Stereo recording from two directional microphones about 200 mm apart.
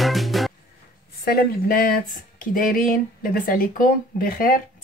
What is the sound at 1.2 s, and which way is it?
Speech, 50° left (ahead or behind).